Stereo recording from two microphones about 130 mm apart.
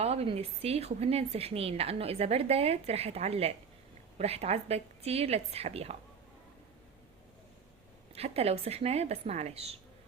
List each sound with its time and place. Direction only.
0.0 s speech: 50° right (ahead or behind)
8.1 s speech: 50° right (ahead or behind)